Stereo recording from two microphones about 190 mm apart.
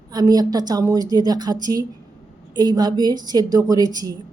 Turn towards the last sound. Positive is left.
turn(degrees=-20)  # may be behind; listen again after turning